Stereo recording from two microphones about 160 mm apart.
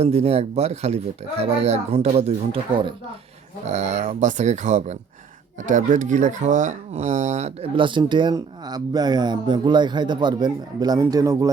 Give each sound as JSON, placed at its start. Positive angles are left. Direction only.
{"t": 0.0, "sound": "speech", "side_deg": -40}
{"t": 3.7, "sound": "speech", "side_deg": -45}